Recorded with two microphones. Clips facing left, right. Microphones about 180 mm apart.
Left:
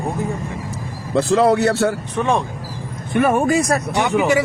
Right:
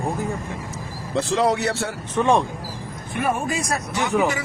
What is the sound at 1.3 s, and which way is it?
Speech, 60° left (ahead or behind).